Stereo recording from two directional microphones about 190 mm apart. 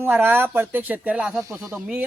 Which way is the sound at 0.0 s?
10° right (ahead or behind).